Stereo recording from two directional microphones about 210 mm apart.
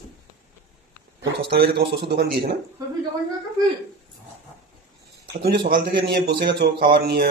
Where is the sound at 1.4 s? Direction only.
50° right (ahead or behind).